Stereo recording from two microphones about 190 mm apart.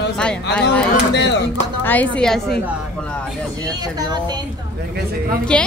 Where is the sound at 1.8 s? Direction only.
10° left (ahead or behind).